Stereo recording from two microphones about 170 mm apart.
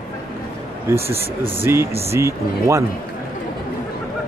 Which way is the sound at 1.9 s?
35° right (ahead or behind).